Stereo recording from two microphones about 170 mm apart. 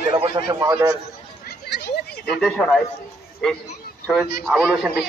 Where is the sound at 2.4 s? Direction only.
5° left (ahead or behind).